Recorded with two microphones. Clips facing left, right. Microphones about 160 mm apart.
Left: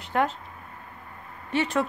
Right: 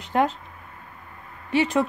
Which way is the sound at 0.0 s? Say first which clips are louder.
Right 3 dB; 20° right (ahead or behind).